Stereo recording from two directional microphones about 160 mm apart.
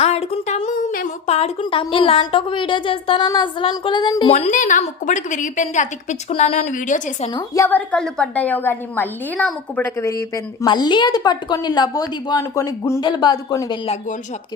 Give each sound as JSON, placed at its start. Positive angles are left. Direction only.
{"t": 0.0, "sound": "a sound", "side_deg": 40}
{"t": 1.3, "sound": "speech", "side_deg": 35}
{"t": 4.3, "sound": "a woman's voice", "side_deg": 50}
{"t": 7.3, "sound": "a woman's voice", "side_deg": 20}
{"t": 10.0, "sound": "speech", "side_deg": 20}